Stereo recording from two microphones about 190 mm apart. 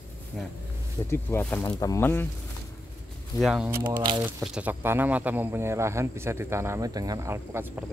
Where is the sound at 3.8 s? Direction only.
25° right (ahead or behind).